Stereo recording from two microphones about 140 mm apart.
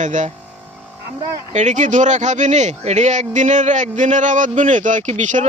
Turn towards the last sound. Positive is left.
turn(degrees=-60)  # may be behind; listen again after turning